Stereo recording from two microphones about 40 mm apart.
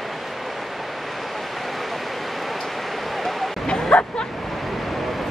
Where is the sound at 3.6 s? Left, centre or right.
Left.